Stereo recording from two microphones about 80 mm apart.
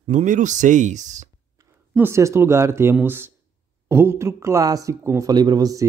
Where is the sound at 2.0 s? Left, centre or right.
Right.